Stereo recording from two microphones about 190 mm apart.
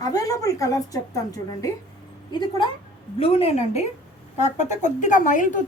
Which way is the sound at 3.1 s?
30° left (ahead or behind).